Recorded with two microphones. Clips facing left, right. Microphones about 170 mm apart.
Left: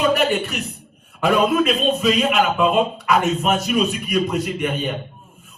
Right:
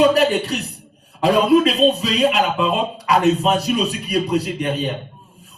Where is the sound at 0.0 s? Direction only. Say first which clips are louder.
Right 4 dB; 35° right (ahead or behind).